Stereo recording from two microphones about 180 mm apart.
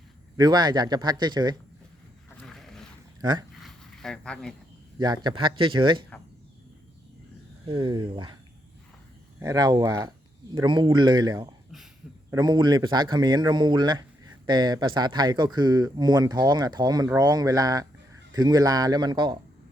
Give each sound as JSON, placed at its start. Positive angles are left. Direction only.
{"t": 0.3, "sound": "speech", "side_deg": -25}
{"t": 2.4, "sound": "wild animals", "side_deg": 0}
{"t": 3.2, "sound": "speech", "side_deg": -25}
{"t": 3.6, "sound": "a sound", "side_deg": 5}
{"t": 4.9, "sound": "speech", "side_deg": -25}
{"t": 7.7, "sound": "speech", "side_deg": -25}
{"t": 9.4, "sound": "speech", "side_deg": -20}